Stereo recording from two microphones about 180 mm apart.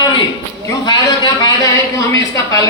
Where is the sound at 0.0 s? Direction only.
25° left (ahead or behind).